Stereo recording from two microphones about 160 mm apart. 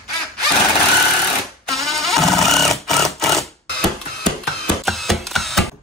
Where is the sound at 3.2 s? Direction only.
Centre (ahead or behind).